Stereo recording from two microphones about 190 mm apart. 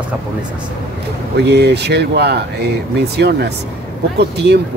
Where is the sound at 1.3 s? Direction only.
60° right (ahead or behind).